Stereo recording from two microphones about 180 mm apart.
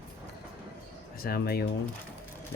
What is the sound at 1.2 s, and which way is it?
Speech, 60° left (ahead or behind).